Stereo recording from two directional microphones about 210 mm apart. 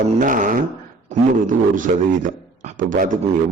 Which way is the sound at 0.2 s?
40° right (ahead or behind).